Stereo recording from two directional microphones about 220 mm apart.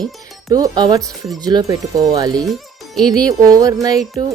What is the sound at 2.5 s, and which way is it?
Speech, centre (ahead or behind).